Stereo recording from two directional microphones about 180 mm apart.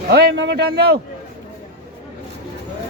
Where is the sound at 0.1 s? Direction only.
65° right (ahead or behind).